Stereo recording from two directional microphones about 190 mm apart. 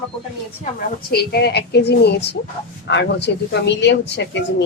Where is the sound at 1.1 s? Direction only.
55° left (ahead or behind).